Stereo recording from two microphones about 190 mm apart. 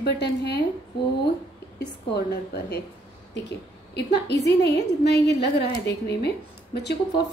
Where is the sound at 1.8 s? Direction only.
55° left (ahead or behind).